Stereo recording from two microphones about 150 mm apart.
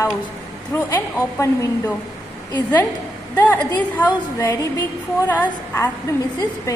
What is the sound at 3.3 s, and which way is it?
A woman's voice, 10° left (ahead or behind).